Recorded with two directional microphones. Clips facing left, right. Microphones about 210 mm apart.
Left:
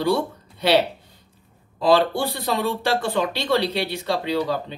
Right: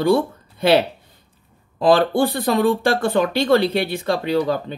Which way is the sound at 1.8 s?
50° right (ahead or behind).